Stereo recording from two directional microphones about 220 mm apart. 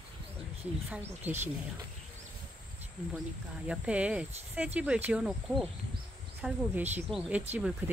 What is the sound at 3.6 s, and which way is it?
Speech, 5° right (ahead or behind).